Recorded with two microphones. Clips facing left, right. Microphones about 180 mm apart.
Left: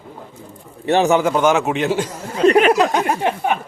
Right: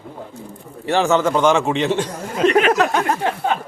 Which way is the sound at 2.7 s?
15° left (ahead or behind).